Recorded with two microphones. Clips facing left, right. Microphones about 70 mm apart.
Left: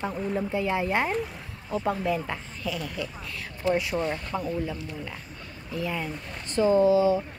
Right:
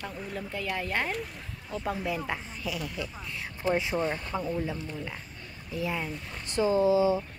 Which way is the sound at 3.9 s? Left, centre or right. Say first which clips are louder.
Left 1 dB; centre.